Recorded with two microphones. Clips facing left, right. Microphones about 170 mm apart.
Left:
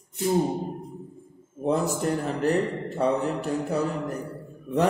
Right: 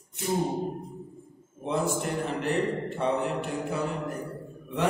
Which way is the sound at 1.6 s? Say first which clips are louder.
Left 4 dB; 40° left (ahead or behind).